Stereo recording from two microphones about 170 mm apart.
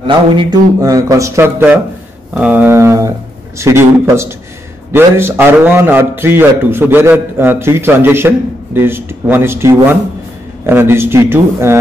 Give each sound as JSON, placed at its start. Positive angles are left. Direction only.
{"t": 0.0, "sound": "a man's voice", "side_deg": -30}